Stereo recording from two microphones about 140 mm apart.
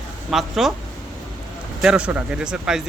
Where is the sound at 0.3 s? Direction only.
Centre (ahead or behind).